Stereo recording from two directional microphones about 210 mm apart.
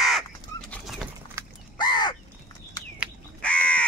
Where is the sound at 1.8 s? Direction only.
20° left (ahead or behind).